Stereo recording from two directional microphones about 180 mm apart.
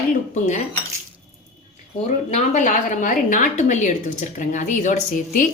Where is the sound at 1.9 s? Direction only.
35° left (ahead or behind).